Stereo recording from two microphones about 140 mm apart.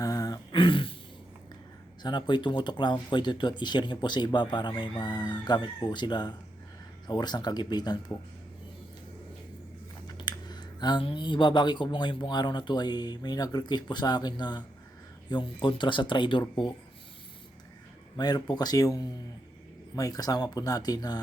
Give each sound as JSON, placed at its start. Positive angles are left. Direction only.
{"t": 0.0, "sound": "a sound", "side_deg": 25}
{"t": 2.0, "sound": "speech", "side_deg": 30}
{"t": 10.1, "sound": "speech", "side_deg": 30}
{"t": 18.2, "sound": "speech", "side_deg": 30}